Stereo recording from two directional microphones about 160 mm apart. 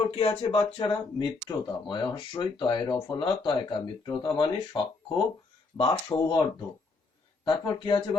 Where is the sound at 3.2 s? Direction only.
30° left (ahead or behind).